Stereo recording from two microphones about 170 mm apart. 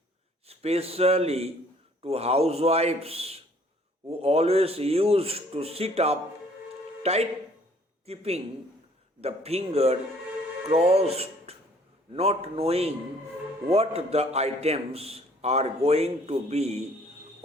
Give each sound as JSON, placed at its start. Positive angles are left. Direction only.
{"t": 0.4, "sound": "a man's voice", "side_deg": -35}